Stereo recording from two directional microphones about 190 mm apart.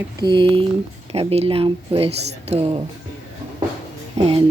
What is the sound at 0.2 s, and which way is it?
Speech, 25° right (ahead or behind).